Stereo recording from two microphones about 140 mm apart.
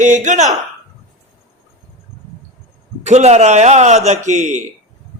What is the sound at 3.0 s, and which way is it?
Speech, 55° right (ahead or behind).